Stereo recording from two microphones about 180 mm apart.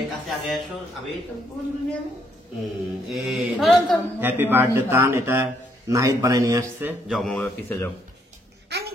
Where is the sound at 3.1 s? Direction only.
5° right (ahead or behind).